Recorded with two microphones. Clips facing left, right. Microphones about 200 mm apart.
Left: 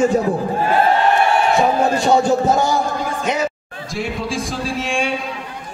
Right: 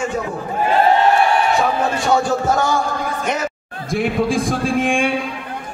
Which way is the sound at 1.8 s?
25° left (ahead or behind).